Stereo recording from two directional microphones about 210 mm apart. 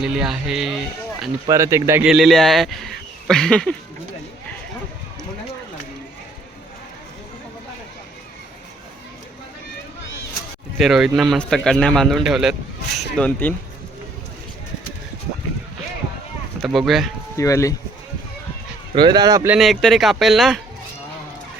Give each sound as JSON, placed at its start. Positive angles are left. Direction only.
{"t": 0.0, "sound": "speech", "side_deg": -5}
{"t": 1.5, "sound": "speech", "side_deg": -15}
{"t": 10.8, "sound": "speech", "side_deg": 0}
{"t": 16.6, "sound": "speech", "side_deg": 0}
{"t": 17.3, "sound": "speech", "side_deg": 15}
{"t": 18.9, "sound": "speech", "side_deg": -20}
{"t": 19.5, "sound": "speech", "side_deg": 0}